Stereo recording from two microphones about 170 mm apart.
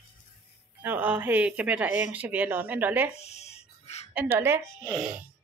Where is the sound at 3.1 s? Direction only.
40° left (ahead or behind).